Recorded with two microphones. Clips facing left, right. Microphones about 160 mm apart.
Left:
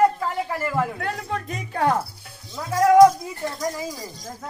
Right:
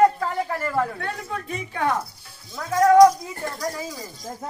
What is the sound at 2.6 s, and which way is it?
Speech, 10° left (ahead or behind).